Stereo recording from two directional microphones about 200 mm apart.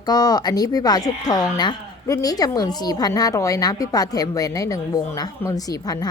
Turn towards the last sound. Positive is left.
turn(degrees=20)  # may be behind; listen again after turning